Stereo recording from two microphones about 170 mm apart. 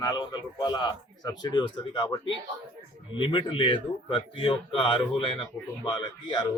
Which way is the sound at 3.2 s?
30° left (ahead or behind).